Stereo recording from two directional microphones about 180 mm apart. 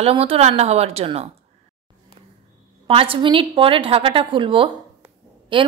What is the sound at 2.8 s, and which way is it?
A woman's voice, 30° right (ahead or behind).